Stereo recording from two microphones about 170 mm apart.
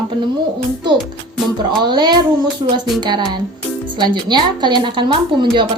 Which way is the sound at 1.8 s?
25° right (ahead or behind).